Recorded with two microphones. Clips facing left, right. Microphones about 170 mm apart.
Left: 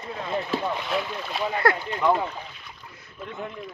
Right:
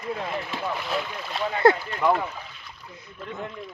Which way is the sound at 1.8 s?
15° left (ahead or behind).